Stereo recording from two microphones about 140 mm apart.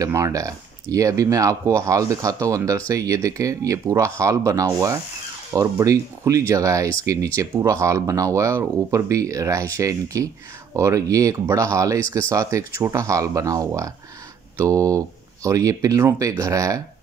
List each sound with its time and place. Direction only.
0.0 s speech: 25° right (ahead or behind)